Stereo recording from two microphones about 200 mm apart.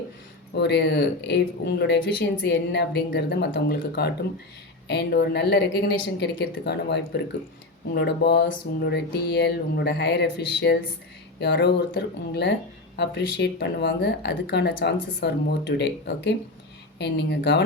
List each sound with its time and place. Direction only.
0.5 s a woman's voice: 55° left (ahead or behind)